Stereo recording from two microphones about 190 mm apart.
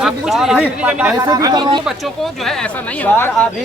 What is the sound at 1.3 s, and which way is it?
Speech, 20° right (ahead or behind).